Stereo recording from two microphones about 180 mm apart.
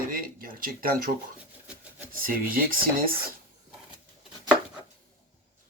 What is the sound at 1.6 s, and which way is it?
Rub, 10° right (ahead or behind).